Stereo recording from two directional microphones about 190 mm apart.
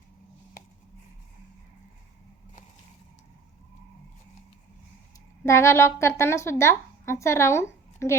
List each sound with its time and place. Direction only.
5.5 s speech: 15° left (ahead or behind)